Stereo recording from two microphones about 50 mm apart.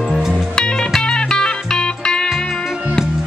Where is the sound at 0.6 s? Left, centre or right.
Centre.